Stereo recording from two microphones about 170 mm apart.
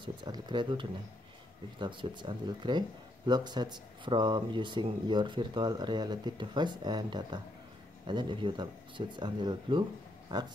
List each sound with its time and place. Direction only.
0.0 s speech: 25° right (ahead or behind)